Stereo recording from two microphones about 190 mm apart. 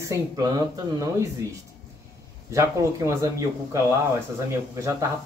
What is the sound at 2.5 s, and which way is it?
Speech, 15° right (ahead or behind).